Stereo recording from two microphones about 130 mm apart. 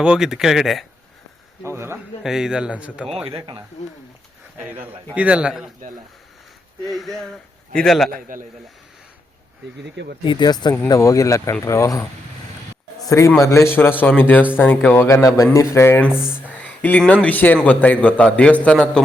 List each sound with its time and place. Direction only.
0.0 s speech: 5° right (ahead or behind)
1.6 s speech: 20° right (ahead or behind)
2.2 s a man's voice: 5° right (ahead or behind)
3.2 s speech: 40° right (ahead or behind)
5.1 s a man's voice: 10° right (ahead or behind)
6.8 s speech: centre (ahead or behind)
8.1 s a man's voice: 90° right
10.2 s speech: 35° left (ahead or behind)
13.1 s speech: 25° left (ahead or behind)
15.0 s speech: 25° left (ahead or behind); by 19.0 s 5° left (ahead or behind)